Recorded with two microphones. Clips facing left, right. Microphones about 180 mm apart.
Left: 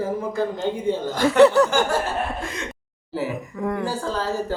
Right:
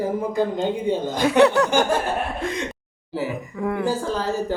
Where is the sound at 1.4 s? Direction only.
Centre (ahead or behind).